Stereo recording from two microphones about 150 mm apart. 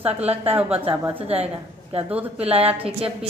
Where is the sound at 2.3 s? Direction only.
40° right (ahead or behind).